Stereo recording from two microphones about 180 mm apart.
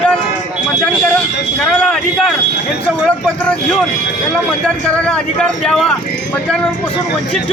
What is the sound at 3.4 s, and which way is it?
Speech, 5° left (ahead or behind).